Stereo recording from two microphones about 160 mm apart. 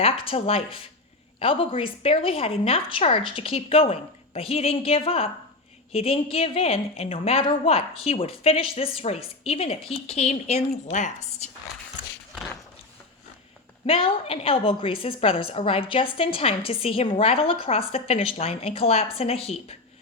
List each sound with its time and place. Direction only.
0.0 s a woman's voice: 35° left (ahead or behind)
13.8 s a woman's voice: 35° left (ahead or behind)